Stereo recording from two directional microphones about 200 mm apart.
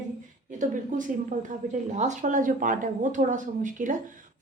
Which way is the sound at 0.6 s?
40° right (ahead or behind).